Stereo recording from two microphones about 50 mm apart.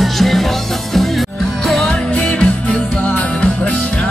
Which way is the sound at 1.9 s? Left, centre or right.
Centre.